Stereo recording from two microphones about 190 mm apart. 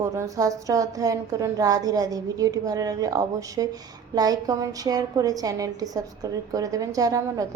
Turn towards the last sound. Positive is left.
turn(degrees=-20)  # may be behind; listen again after turning